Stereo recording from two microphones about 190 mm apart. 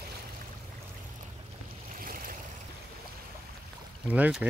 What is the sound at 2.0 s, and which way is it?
Waves, 50° right (ahead or behind).